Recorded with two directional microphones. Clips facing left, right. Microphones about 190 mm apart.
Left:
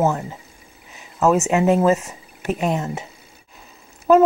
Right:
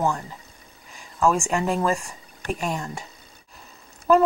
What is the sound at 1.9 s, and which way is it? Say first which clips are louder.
Speech: left 7 dB; 5° left (ahead or behind).